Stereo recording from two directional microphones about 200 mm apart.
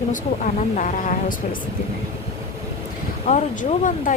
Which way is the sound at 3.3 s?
40° left (ahead or behind).